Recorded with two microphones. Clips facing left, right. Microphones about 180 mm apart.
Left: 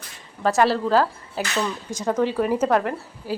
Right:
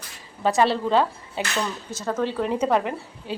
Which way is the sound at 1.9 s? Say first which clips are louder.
Left 6 dB; 15° left (ahead or behind).